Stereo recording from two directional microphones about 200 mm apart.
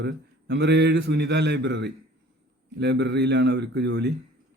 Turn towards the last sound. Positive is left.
turn(degrees=-55)  # may be behind; listen again after turning